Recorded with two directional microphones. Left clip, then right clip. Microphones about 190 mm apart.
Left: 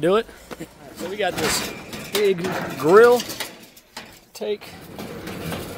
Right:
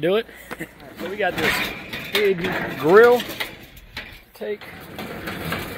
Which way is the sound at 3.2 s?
20° left (ahead or behind).